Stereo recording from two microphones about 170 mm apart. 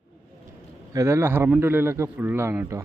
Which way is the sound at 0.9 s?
15° right (ahead or behind).